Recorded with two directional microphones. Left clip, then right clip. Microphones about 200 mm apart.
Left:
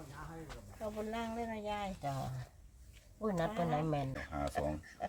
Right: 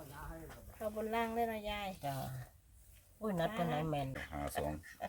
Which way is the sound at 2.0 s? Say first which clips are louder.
Left 1 dB; 5° right (ahead or behind).